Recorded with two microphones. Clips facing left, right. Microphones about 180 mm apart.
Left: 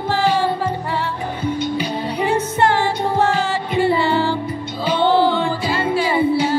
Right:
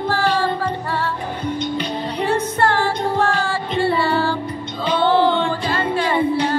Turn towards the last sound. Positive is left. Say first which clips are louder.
# left 1 dB
turn(degrees=5)  # may be behind; listen again after turning